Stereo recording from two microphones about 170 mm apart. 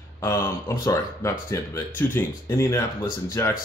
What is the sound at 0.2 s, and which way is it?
Speech, 15° left (ahead or behind).